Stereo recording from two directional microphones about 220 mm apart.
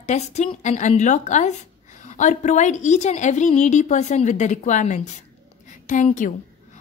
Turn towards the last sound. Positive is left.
turn(degrees=35)  # may be behind; listen again after turning